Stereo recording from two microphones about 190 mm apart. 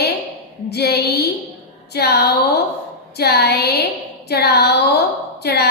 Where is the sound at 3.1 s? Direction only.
60° left (ahead or behind).